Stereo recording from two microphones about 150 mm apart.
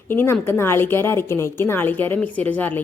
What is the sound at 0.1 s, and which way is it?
A woman's voice, 15° left (ahead or behind).